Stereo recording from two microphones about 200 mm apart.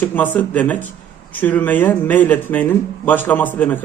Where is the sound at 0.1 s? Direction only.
10° left (ahead or behind).